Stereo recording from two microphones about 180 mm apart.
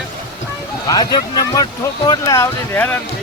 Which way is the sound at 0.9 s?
20° left (ahead or behind).